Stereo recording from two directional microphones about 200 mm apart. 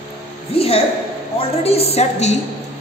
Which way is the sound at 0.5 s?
30° left (ahead or behind).